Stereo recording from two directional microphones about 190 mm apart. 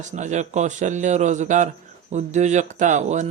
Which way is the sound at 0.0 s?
40° right (ahead or behind).